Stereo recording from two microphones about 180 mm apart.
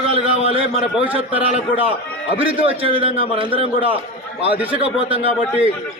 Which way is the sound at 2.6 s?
30° right (ahead or behind).